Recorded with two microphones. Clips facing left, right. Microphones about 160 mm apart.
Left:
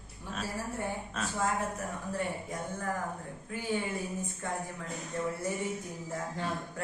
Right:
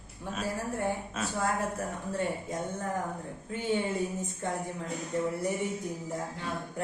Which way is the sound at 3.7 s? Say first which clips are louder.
Right 3 dB; 25° right (ahead or behind).